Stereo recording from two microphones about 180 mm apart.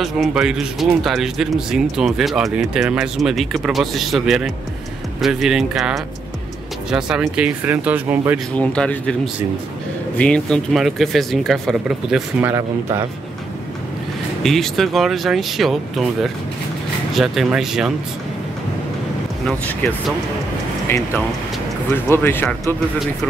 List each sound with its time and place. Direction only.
0.0 s speech: centre (ahead or behind)
8.5 s speech: 5° left (ahead or behind)
12.4 s speech: 10° right (ahead or behind)
14.4 s speech: centre (ahead or behind)
20.8 s speech: 10° left (ahead or behind)